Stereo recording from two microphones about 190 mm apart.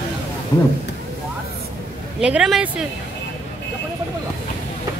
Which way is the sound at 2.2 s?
5° right (ahead or behind).